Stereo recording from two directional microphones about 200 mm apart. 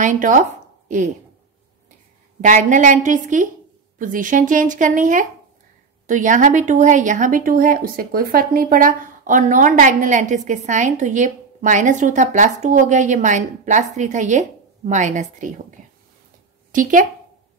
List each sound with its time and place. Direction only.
0.0 s a woman's voice: 40° right (ahead or behind)
2.4 s speech: 40° right (ahead or behind)
15.8 s a sound: 35° right (ahead or behind)
16.7 s a woman's voice: 40° right (ahead or behind)